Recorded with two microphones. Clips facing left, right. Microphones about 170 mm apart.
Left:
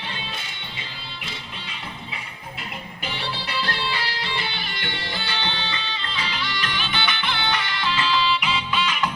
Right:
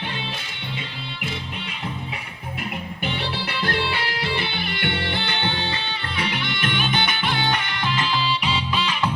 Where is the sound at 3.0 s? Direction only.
55° right (ahead or behind).